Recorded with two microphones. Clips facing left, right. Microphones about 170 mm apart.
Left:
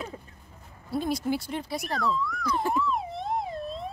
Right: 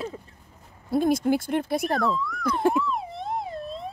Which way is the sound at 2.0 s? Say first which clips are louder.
Right 3 dB; centre (ahead or behind).